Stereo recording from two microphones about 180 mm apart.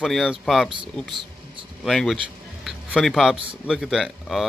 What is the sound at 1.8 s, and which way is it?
Speech, centre (ahead or behind).